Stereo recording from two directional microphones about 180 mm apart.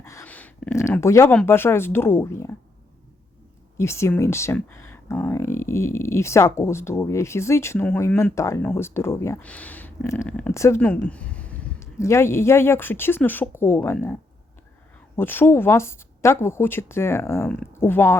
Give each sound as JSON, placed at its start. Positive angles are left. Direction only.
{"t": 0.0, "sound": "a sound", "side_deg": 15}
{"t": 1.4, "sound": "speech", "side_deg": 10}
{"t": 3.8, "sound": "speech", "side_deg": 15}